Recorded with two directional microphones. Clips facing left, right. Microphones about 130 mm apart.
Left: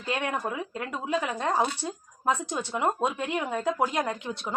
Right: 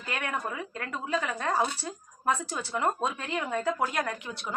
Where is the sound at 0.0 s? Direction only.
20° left (ahead or behind).